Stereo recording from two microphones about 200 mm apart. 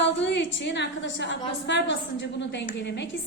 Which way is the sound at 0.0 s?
60° left (ahead or behind).